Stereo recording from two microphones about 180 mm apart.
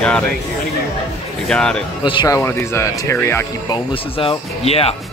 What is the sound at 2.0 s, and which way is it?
Speech, 25° left (ahead or behind).